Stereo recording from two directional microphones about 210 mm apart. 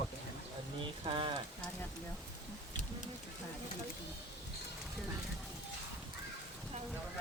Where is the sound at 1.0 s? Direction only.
25° right (ahead or behind).